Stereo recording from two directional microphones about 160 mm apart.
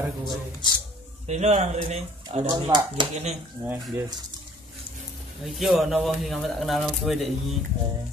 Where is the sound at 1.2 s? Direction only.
45° right (ahead or behind).